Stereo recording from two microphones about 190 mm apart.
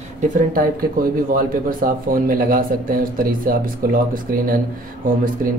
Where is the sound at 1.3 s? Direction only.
50° right (ahead or behind).